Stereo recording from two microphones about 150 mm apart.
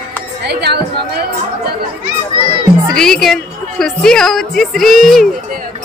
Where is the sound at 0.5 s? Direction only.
90° right.